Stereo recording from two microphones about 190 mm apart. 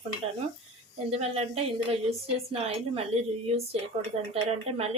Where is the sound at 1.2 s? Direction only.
35° right (ahead or behind).